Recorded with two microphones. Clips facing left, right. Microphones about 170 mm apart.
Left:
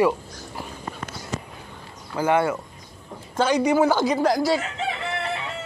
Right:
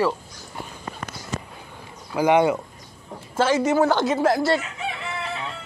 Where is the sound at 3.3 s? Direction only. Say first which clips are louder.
Even; centre (ahead or behind).